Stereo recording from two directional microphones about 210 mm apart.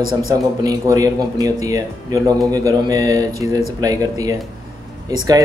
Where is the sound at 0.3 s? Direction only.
15° right (ahead or behind).